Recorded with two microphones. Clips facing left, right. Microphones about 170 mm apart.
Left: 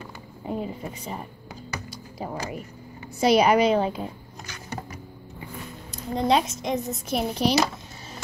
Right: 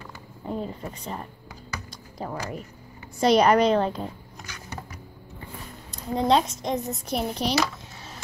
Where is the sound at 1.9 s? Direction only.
5° left (ahead or behind).